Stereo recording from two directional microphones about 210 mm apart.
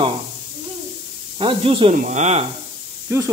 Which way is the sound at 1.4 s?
25° right (ahead or behind).